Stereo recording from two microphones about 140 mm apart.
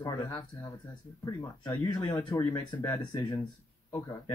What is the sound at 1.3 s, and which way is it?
Speech, 30° left (ahead or behind).